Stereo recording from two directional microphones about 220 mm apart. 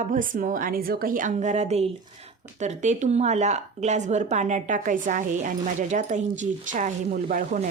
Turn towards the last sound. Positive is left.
turn(degrees=-35)  # may be behind; listen again after turning